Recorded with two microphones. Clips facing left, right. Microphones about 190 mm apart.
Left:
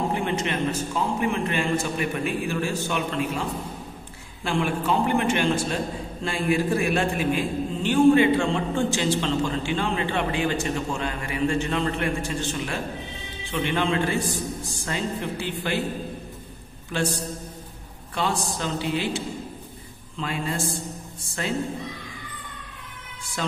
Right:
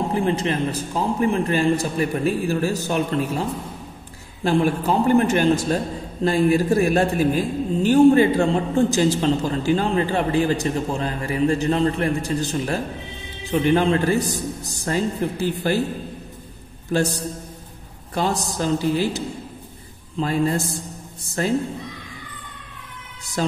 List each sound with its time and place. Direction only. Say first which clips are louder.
0.1 s a man's voice: right 5 dB; 35° right (ahead or behind)
16.9 s a man's voice: right 6 dB; 40° right (ahead or behind)
18.1 s a man's voice: right 4 dB; 40° right (ahead or behind)